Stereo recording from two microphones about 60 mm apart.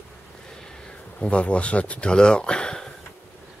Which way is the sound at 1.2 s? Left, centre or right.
Left.